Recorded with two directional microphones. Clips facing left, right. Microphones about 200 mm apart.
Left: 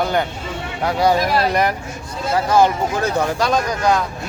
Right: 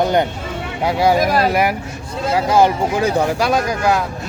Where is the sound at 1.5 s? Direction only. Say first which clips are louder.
Right 1 dB; 5° right (ahead or behind).